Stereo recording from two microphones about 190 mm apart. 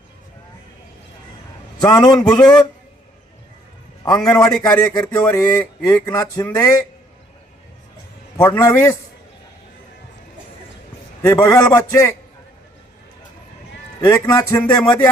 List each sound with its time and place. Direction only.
1.8 s speech: 20° left (ahead or behind)
2.2 s a man's voice: 5° left (ahead or behind)
4.2 s a man's voice: 5° left (ahead or behind)
4.9 s speech: 20° left (ahead or behind)
8.4 s speech: 10° left (ahead or behind)
11.3 s speech: 15° left (ahead or behind)
14.0 s speech: 20° left (ahead or behind)